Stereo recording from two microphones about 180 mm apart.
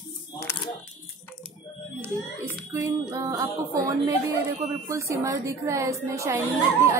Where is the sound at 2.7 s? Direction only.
15° right (ahead or behind).